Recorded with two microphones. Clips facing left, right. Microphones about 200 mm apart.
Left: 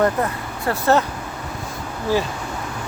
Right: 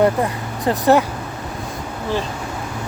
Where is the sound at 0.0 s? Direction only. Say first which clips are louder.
Right 3 dB; 15° right (ahead or behind).